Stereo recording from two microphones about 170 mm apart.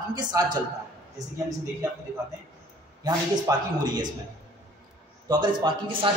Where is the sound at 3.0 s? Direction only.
25° right (ahead or behind).